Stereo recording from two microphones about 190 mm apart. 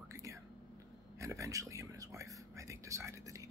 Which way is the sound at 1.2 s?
15° right (ahead or behind).